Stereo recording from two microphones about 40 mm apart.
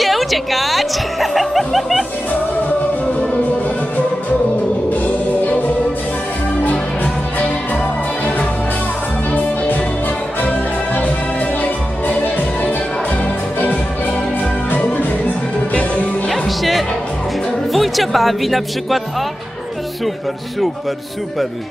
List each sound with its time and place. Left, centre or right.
0.0 s speech: centre
5.0 s music: left
10.4 s music: left
12.2 s music: left
16.3 s music: centre
17.7 s speech: centre